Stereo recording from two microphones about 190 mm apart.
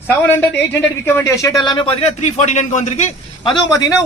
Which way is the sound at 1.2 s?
15° left (ahead or behind).